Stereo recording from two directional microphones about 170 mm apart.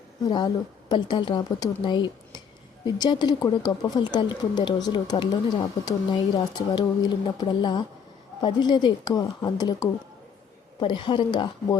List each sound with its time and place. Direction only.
0.3 s speech: 25° left (ahead or behind)